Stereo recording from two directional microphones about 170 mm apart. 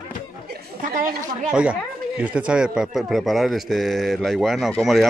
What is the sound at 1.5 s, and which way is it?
Speech, 5° right (ahead or behind).